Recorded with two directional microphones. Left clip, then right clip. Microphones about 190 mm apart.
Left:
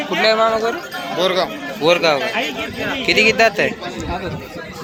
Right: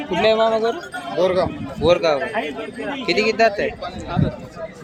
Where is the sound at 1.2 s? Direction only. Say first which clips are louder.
Left 1 dB; 35° right (ahead or behind).